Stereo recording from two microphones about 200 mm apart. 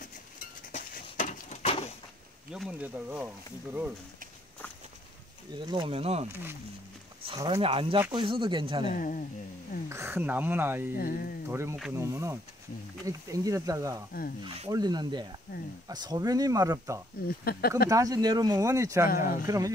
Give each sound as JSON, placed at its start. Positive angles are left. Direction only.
{"t": 0.7, "sound": "a sound", "side_deg": 40}
{"t": 2.5, "sound": "speech", "side_deg": -5}
{"t": 5.6, "sound": "speech", "side_deg": -25}
{"t": 7.2, "sound": "speech", "side_deg": -20}
{"t": 8.8, "sound": "speech", "side_deg": 40}
{"t": 9.8, "sound": "speech", "side_deg": -15}
{"t": 11.0, "sound": "speech", "side_deg": 45}
{"t": 11.5, "sound": "speech", "side_deg": -15}
{"t": 15.5, "sound": "speech", "side_deg": 45}
{"t": 15.9, "sound": "speech", "side_deg": -20}
{"t": 17.3, "sound": "speech", "side_deg": 50}
{"t": 17.8, "sound": "speech", "side_deg": -15}
{"t": 19.0, "sound": "speech", "side_deg": 45}
{"t": 19.4, "sound": "speech", "side_deg": -15}